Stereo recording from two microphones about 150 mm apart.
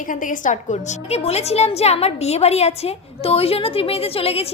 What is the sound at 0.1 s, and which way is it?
A woman's voice, 60° left (ahead or behind).